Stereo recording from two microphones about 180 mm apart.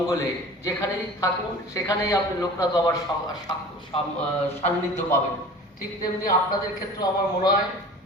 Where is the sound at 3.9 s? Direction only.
30° left (ahead or behind).